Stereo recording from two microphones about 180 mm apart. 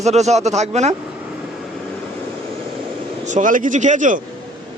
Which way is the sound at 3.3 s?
45° right (ahead or behind).